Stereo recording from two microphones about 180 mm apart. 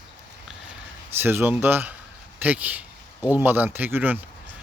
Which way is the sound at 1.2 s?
10° right (ahead or behind).